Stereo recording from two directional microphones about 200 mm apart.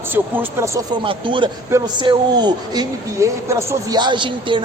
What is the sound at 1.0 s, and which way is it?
A man's voice, 25° right (ahead or behind).